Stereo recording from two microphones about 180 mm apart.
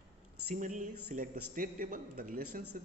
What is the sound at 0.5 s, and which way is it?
A man's voice, 45° right (ahead or behind).